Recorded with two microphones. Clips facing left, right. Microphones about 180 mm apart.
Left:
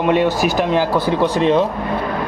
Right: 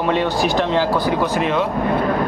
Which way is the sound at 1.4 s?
35° left (ahead or behind).